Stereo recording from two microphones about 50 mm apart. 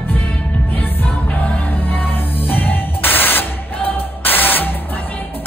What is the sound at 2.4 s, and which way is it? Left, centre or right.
Music, left.